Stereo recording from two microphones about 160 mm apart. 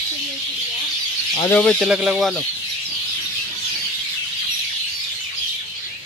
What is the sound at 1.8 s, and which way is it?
Speech, 5° right (ahead or behind).